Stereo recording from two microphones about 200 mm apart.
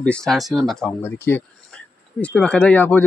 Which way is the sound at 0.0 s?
5° left (ahead or behind).